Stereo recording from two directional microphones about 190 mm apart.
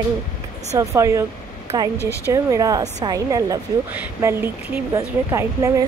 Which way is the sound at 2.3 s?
20° right (ahead or behind).